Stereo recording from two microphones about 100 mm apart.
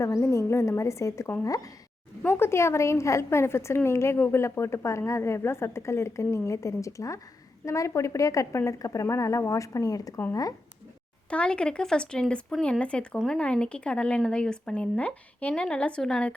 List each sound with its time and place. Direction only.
0.0 s a woman's voice: 30° left (ahead or behind)
11.3 s speech: 10° left (ahead or behind)